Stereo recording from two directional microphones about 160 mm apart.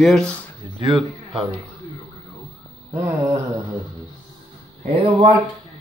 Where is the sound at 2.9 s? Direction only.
20° right (ahead or behind).